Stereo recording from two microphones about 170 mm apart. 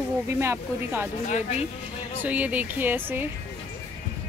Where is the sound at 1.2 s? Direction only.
45° left (ahead or behind).